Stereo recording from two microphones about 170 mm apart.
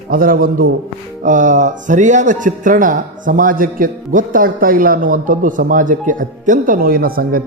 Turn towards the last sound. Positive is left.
turn(degrees=-60)  # may be behind; listen again after turning